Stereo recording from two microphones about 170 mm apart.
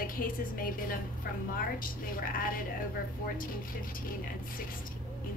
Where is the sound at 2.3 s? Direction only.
55° left (ahead or behind).